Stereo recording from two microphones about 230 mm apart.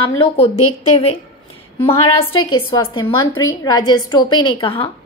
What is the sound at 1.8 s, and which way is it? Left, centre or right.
A woman's voice, left.